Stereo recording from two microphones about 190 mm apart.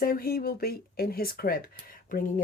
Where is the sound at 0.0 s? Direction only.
50° left (ahead or behind).